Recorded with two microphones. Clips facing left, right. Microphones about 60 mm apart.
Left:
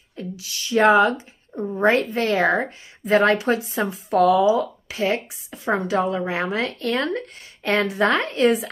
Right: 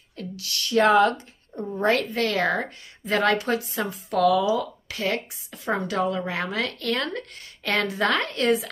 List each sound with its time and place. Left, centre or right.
0.1 s speech: centre
1.9 s a woman's voice: left